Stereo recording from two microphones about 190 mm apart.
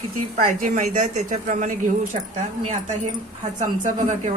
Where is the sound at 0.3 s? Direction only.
45° right (ahead or behind).